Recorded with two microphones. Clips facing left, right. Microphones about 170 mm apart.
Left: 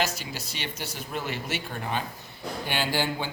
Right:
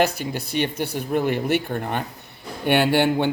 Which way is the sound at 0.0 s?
60° right (ahead or behind).